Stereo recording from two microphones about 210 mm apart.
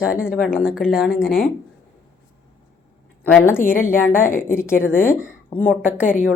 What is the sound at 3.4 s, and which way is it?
Speech, 10° left (ahead or behind).